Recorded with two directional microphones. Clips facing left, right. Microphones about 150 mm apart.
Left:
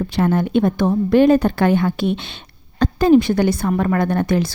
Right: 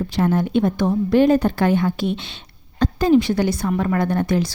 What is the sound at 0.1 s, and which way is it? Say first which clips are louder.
A woman's voice: left 1 dB; 65° left (ahead or behind).